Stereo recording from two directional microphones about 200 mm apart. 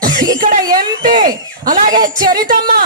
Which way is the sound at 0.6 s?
20° right (ahead or behind).